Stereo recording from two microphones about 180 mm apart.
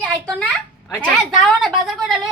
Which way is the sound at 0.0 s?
5° left (ahead or behind).